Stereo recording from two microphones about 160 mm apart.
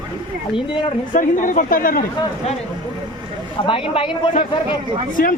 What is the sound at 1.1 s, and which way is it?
Speech, 55° left (ahead or behind).